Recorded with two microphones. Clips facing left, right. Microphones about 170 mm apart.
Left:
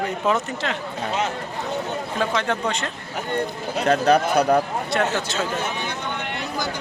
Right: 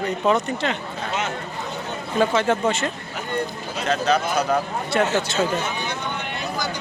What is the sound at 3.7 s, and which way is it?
Speech, 55° left (ahead or behind).